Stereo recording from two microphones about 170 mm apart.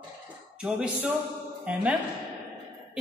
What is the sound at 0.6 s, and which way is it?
Speech, 5° right (ahead or behind).